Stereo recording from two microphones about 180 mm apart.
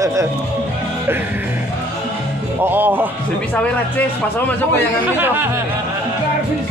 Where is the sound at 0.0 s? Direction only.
15° right (ahead or behind).